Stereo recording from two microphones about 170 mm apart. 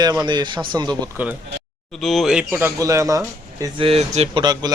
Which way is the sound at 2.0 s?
Centre (ahead or behind).